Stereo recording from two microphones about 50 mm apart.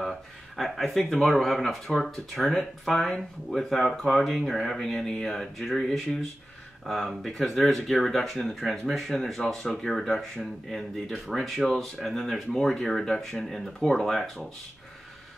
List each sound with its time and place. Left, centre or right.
0.6 s speech: centre